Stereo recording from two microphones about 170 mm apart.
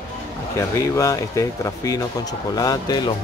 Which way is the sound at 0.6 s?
20° left (ahead or behind).